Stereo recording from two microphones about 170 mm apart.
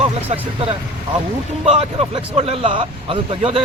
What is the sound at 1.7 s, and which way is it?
Speech, 35° right (ahead or behind).